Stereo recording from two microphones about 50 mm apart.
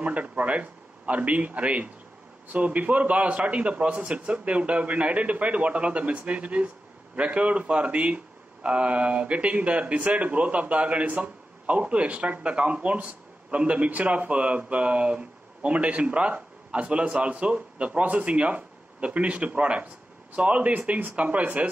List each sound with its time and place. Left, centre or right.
0.0 s speech: right